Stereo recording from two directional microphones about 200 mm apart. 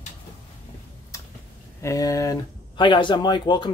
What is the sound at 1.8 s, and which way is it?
Speech, 15° left (ahead or behind).